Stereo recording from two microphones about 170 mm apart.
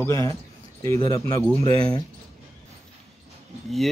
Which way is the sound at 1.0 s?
20° left (ahead or behind).